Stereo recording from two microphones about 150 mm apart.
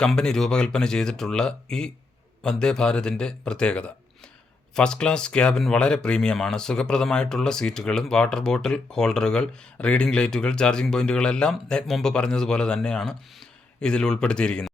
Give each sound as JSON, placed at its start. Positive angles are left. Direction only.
{"t": 0.0, "sound": "speech", "side_deg": 5}